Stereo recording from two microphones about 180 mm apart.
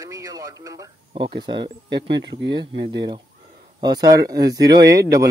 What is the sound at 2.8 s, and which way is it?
Speech, 70° right (ahead or behind).